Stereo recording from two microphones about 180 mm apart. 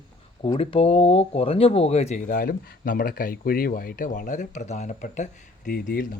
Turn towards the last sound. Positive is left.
turn(degrees=50)  # may be behind; listen again after turning